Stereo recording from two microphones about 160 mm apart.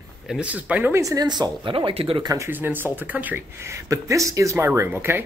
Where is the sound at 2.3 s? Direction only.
15° right (ahead or behind).